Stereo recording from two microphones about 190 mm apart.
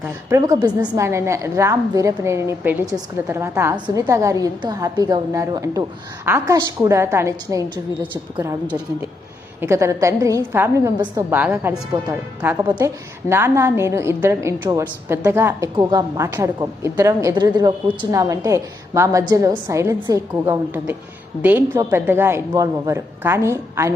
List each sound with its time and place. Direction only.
0.0 s a woman's voice: 15° right (ahead or behind)
9.6 s a woman's voice: 15° right (ahead or behind)